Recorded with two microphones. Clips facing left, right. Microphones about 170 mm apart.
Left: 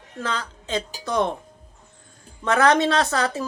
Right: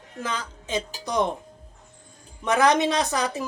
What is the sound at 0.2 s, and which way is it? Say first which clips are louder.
Speech: left 2 dB; 15° right (ahead or behind).